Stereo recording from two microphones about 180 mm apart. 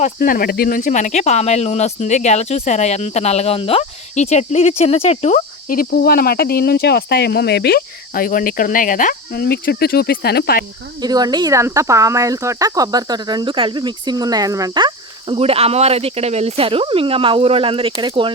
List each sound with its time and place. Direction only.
0.0 s speech: 55° left (ahead or behind)
5.7 s speech: 55° left (ahead or behind)
11.0 s speech: 20° right (ahead or behind)